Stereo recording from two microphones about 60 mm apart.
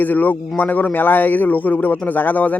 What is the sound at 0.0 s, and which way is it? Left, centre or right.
A man's voice, left.